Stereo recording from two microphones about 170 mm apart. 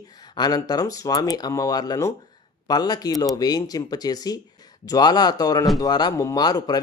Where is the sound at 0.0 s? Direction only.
25° left (ahead or behind).